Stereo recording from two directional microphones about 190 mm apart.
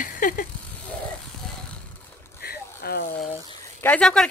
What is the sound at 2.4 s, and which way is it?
Vehicle, 55° left (ahead or behind).